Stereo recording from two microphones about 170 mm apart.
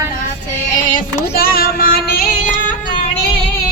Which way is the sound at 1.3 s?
60° left (ahead or behind).